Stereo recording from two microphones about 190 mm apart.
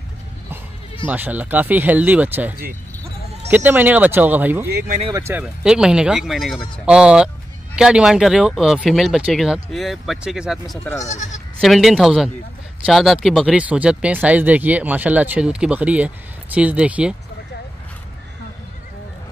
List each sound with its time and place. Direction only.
1.0 s speech: 10° right (ahead or behind)
4.6 s speech: 55° right (ahead or behind)
5.1 s speech: 10° right (ahead or behind)
11.0 s speech: 40° left (ahead or behind)
11.6 s speech: centre (ahead or behind)